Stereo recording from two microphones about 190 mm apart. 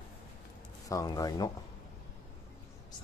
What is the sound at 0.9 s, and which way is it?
Speech, 20° left (ahead or behind).